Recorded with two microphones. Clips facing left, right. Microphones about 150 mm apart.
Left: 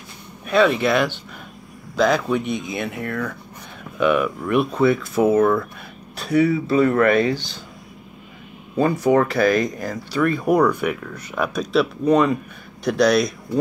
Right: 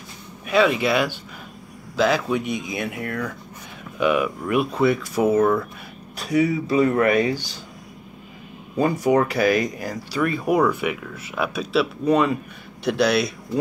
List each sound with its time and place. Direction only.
0.5 s speech: 10° right (ahead or behind)
4.0 s speech: 5° right (ahead or behind)
9.1 s speech: 15° right (ahead or behind)